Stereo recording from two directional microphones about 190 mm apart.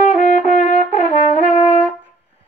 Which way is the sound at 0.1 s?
40° left (ahead or behind).